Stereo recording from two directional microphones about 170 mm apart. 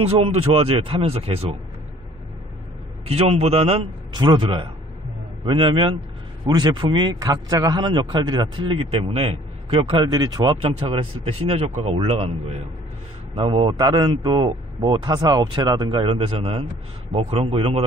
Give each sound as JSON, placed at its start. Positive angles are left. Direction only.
{"t": 0.0, "sound": "speech", "side_deg": -35}
{"t": 3.1, "sound": "a man's voice", "side_deg": -35}